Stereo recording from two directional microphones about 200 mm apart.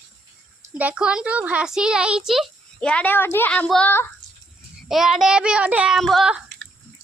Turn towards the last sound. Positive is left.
turn(degrees=0)  # may be behind; listen again after turning